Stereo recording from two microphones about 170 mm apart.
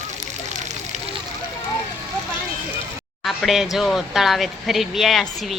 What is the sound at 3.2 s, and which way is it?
Speech, centre (ahead or behind).